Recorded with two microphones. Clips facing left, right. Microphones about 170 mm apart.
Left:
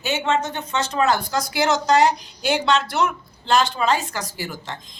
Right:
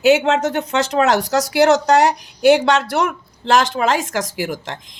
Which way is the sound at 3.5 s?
90° right.